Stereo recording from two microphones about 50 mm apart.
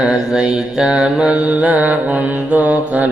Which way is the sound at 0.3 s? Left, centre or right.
Centre.